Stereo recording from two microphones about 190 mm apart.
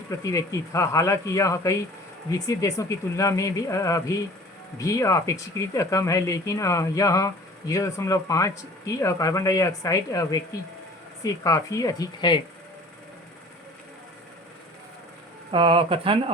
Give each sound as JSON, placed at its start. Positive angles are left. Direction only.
{"t": 0.1, "sound": "speech", "side_deg": 15}
{"t": 15.5, "sound": "speech", "side_deg": -30}